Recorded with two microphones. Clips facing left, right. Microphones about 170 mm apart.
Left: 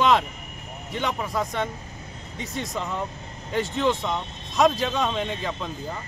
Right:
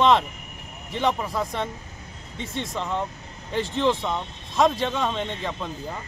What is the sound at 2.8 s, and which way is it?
A man's voice, centre (ahead or behind).